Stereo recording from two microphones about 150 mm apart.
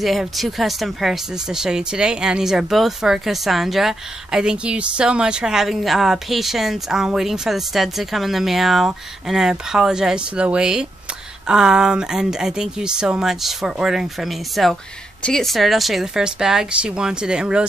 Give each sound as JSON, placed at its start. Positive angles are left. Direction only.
{"t": 0.0, "sound": "speech", "side_deg": 0}